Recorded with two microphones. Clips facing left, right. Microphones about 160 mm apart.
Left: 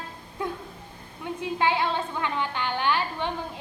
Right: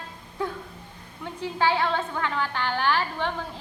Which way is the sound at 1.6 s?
15° left (ahead or behind).